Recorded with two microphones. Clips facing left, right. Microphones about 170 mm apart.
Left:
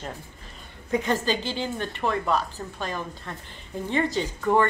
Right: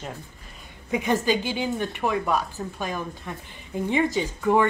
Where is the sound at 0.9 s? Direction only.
15° right (ahead or behind).